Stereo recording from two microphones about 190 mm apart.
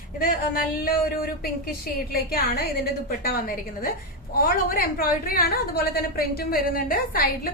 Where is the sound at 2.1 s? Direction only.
55° left (ahead or behind).